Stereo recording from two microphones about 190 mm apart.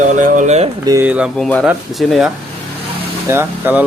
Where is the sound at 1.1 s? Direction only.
5° right (ahead or behind).